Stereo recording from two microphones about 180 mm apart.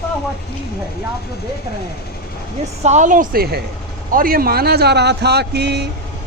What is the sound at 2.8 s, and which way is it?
A woman's voice, 40° right (ahead or behind).